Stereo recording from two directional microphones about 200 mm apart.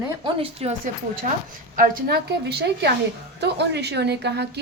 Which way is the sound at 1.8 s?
55° right (ahead or behind).